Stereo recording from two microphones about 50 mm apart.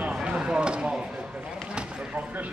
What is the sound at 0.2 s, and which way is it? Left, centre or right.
Chop, centre.